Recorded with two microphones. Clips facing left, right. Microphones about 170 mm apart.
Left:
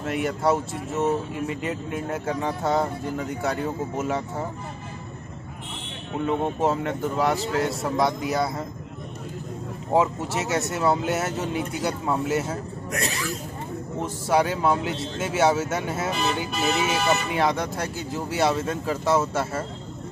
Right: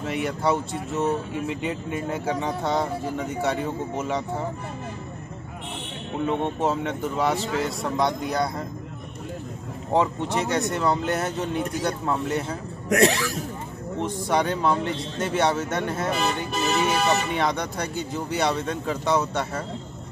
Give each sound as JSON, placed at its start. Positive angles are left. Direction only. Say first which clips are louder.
{"t": 0.0, "sound": "speech", "louder": "left 1 dB", "side_deg": 0}
{"t": 6.2, "sound": "speech", "louder": "left 1 dB", "side_deg": 0}
{"t": 9.9, "sound": "speech", "louder": "even", "side_deg": 5}
{"t": 12.9, "sound": "speech", "louder": "right 9 dB", "side_deg": -90}
{"t": 14.0, "sound": "speech", "louder": "left 1 dB", "side_deg": 5}